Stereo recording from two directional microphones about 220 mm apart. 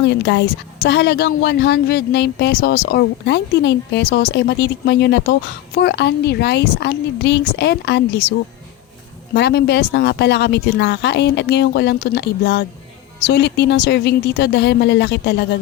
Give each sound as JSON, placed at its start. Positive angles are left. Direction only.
{"t": 0.2, "sound": "a woman's voice", "side_deg": 50}